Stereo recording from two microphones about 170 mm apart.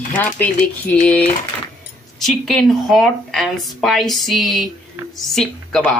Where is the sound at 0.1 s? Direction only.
10° left (ahead or behind).